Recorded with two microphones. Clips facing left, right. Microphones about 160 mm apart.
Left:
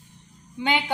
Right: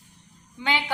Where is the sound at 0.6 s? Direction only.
20° left (ahead or behind).